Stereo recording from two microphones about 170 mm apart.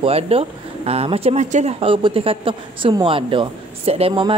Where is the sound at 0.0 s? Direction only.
35° right (ahead or behind).